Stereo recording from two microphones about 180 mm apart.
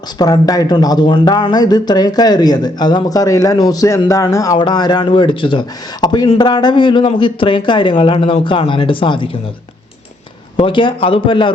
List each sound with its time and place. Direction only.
0.2 s speech: 20° left (ahead or behind)
10.6 s speech: 25° left (ahead or behind)